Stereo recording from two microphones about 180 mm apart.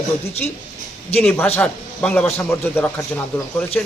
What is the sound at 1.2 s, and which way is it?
A man's voice, 10° left (ahead or behind).